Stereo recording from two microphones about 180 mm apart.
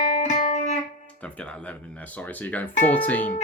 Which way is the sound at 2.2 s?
10° left (ahead or behind).